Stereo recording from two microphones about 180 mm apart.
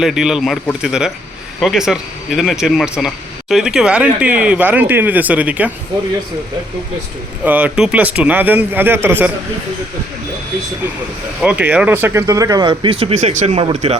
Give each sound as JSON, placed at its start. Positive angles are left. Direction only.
{"t": 0.0, "sound": "speech", "side_deg": -5}
{"t": 7.4, "sound": "speech", "side_deg": -10}
{"t": 11.4, "sound": "speech", "side_deg": -10}